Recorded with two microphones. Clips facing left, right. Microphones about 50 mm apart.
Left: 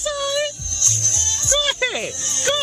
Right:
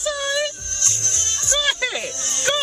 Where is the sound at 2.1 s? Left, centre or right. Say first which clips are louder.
Even; right.